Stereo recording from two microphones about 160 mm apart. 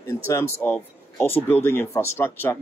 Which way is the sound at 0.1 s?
15° left (ahead or behind).